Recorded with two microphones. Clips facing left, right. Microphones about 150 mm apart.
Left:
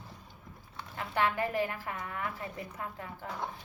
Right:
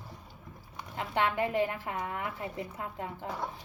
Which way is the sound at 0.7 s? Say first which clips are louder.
Right 1 dB; 20° right (ahead or behind).